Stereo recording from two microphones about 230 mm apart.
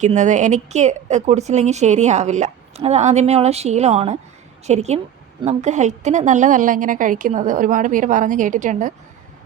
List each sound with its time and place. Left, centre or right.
0.0 s a woman's voice: right